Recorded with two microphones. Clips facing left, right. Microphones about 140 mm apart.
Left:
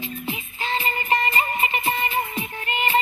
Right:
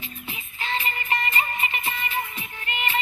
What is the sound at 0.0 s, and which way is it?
Music, 30° left (ahead or behind).